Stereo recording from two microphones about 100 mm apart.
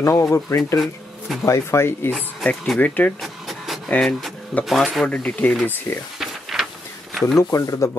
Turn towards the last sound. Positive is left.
turn(degrees=30)  # may be behind; listen again after turning